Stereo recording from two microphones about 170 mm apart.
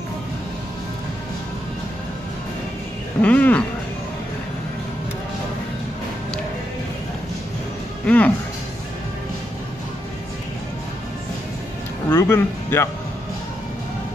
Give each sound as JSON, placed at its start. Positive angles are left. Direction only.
{"t": 3.2, "sound": "a sound", "side_deg": 10}
{"t": 8.0, "sound": "music", "side_deg": 10}
{"t": 12.1, "sound": "music", "side_deg": 15}